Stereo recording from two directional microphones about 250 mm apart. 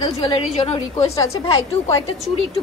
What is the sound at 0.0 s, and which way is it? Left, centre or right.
A woman's voice, centre.